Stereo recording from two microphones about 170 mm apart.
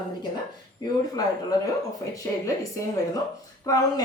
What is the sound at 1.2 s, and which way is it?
Speech, 20° left (ahead or behind).